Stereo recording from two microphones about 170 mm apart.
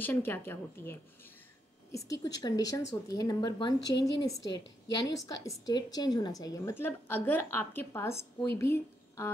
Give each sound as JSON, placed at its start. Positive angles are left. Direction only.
{"t": 0.0, "sound": "a woman's voice", "side_deg": 10}
{"t": 4.4, "sound": "a woman's voice", "side_deg": 90}
{"t": 5.1, "sound": "a woman's voice", "side_deg": 20}